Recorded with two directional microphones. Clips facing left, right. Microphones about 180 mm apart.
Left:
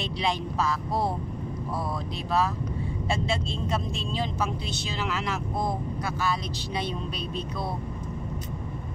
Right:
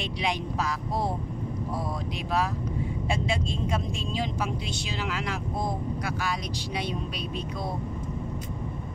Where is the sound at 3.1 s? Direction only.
15° right (ahead or behind).